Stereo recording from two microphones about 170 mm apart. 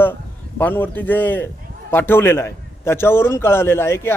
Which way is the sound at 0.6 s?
10° left (ahead or behind).